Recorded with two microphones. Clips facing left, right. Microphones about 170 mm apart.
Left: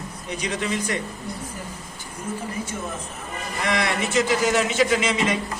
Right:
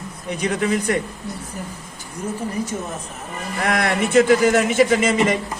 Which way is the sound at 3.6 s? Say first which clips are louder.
Right 4 dB; 55° right (ahead or behind).